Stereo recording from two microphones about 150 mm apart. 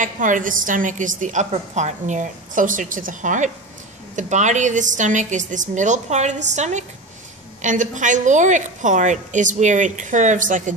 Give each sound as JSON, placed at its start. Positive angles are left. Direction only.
{"t": 0.0, "sound": "a woman's voice", "side_deg": -60}